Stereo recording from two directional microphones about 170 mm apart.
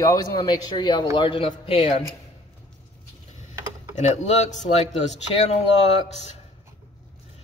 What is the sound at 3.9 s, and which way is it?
Speech, 40° left (ahead or behind).